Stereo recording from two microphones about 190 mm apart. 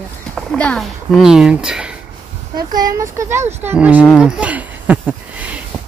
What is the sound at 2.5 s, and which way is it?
Speech, 20° right (ahead or behind).